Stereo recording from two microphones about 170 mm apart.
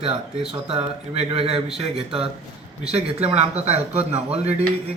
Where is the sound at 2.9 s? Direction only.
40° right (ahead or behind).